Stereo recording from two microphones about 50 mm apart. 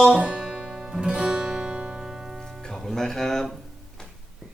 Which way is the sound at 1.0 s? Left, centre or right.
Centre.